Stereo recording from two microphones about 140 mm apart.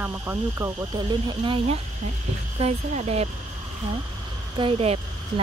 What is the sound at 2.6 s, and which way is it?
Speech, 50° right (ahead or behind).